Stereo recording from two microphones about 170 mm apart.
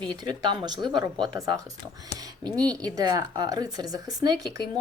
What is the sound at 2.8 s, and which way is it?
Speech, 20° right (ahead or behind).